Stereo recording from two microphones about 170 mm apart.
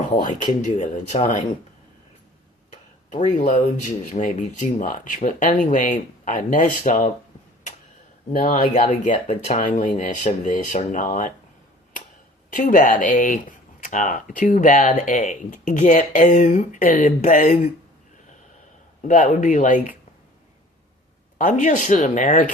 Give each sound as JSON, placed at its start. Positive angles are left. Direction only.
{"t": 0.6, "sound": "speech", "side_deg": 45}
{"t": 3.1, "sound": "speech", "side_deg": 45}
{"t": 8.3, "sound": "speech", "side_deg": 50}
{"t": 12.5, "sound": "speech", "side_deg": 50}
{"t": 19.0, "sound": "speech", "side_deg": 50}
{"t": 21.3, "sound": "speech", "side_deg": 50}